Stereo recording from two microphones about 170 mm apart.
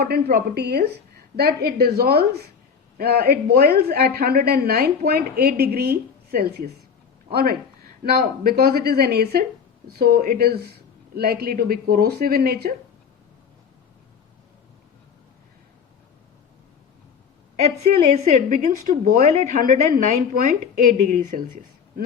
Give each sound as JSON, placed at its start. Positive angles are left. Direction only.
{"t": 0.0, "sound": "a woman's voice", "side_deg": -65}
{"t": 8.0, "sound": "a woman's voice", "side_deg": -60}
{"t": 17.6, "sound": "a woman's voice", "side_deg": -40}